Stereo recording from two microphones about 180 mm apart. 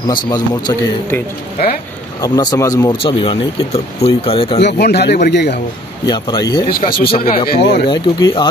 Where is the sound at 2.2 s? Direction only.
20° left (ahead or behind).